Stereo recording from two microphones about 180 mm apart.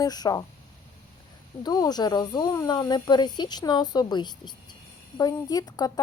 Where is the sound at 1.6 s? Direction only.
20° left (ahead or behind).